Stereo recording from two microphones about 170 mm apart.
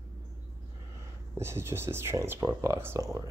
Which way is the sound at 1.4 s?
15° right (ahead or behind).